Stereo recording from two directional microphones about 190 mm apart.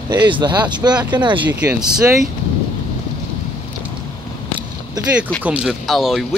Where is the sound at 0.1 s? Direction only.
25° right (ahead or behind).